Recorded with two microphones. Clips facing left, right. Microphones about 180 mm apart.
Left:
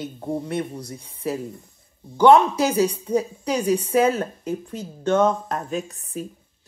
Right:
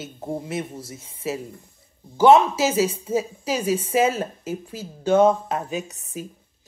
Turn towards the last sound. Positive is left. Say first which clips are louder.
# left 2 dB
turn(degrees=-80)